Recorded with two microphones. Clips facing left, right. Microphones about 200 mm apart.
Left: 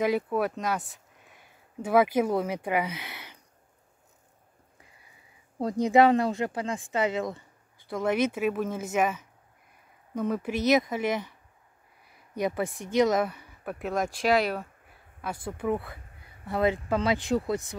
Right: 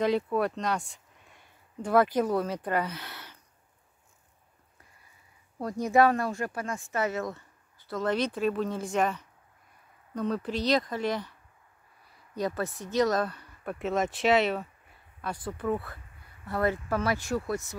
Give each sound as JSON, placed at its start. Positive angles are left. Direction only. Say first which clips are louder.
{"t": 0.0, "sound": "speech", "louder": "even", "side_deg": 5}
{"t": 5.6, "sound": "speech", "louder": "left 3 dB", "side_deg": 20}
{"t": 12.4, "sound": "speech", "louder": "left 2 dB", "side_deg": 15}